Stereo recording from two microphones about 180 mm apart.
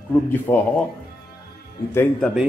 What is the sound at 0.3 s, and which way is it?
Speech, 10° left (ahead or behind).